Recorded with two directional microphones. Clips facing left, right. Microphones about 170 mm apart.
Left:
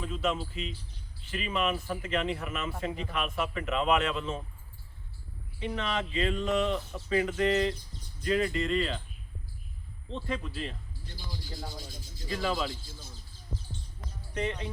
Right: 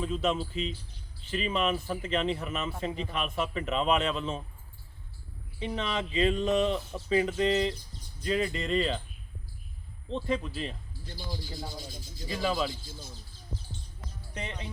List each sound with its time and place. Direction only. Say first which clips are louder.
0.0 s speech: right 2 dB; 25° right (ahead or behind)
5.5 s speech: even; 20° right (ahead or behind)
10.1 s speech: right 4 dB; 15° right (ahead or behind)
12.3 s speech: right 1 dB; 15° right (ahead or behind)
14.3 s speech: left 6 dB; 20° right (ahead or behind)